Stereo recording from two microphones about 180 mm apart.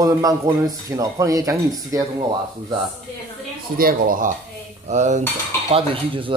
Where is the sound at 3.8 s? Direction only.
50° right (ahead or behind).